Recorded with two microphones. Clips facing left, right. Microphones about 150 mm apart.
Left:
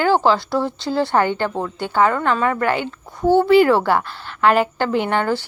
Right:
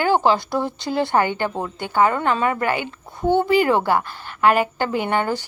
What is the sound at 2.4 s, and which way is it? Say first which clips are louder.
A woman's voice: left 2 dB; 10° right (ahead or behind).